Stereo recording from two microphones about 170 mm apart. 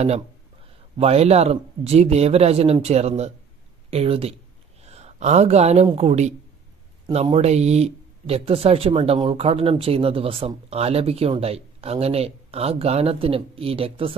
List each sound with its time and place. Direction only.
0.9 s speech: 35° right (ahead or behind)